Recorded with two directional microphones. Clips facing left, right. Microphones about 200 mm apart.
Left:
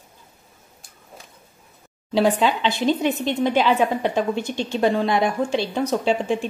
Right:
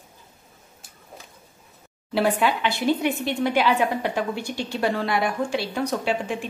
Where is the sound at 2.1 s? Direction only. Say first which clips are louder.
Left 3 dB; 20° left (ahead or behind).